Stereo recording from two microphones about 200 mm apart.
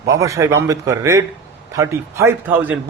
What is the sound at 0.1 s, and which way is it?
Speech, 15° right (ahead or behind).